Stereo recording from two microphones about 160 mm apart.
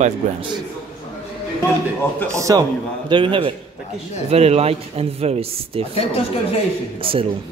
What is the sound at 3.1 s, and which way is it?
Speech, 30° right (ahead or behind).